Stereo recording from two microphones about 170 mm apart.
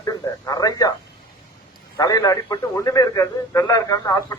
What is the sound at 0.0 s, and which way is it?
Speech, 20° left (ahead or behind).